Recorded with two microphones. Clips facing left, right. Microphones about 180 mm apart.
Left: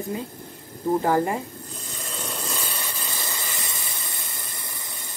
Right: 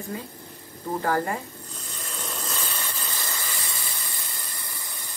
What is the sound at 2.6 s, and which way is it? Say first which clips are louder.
Steam: left 1 dB; 15° left (ahead or behind).